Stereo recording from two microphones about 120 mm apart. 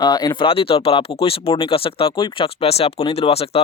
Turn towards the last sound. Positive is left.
turn(degrees=55)  # may be behind; listen again after turning